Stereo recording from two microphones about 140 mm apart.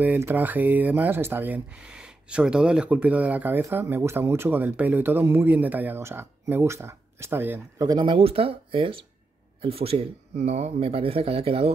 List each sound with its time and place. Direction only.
0.0 s speech: 15° right (ahead or behind)
7.8 s speech: 30° right (ahead or behind)